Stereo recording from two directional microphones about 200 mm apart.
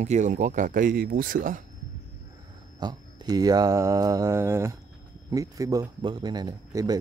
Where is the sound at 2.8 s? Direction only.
20° right (ahead or behind).